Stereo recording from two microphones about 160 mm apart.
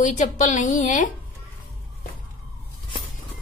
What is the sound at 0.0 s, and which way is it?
A woman's voice, 50° left (ahead or behind).